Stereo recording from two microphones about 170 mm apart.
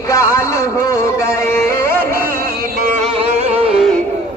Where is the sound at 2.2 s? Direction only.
55° right (ahead or behind).